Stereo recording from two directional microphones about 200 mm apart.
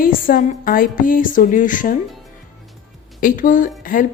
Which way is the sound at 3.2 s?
40° left (ahead or behind).